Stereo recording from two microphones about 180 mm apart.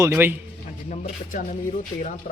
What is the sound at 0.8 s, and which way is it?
Speech, 45° left (ahead or behind).